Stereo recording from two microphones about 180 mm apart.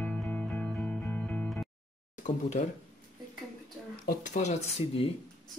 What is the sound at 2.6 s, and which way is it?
Speech, 40° left (ahead or behind).